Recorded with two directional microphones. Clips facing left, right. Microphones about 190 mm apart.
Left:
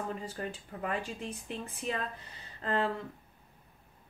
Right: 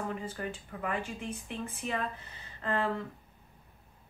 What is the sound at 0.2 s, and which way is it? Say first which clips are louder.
Speech: right 1 dB; 35° left (ahead or behind).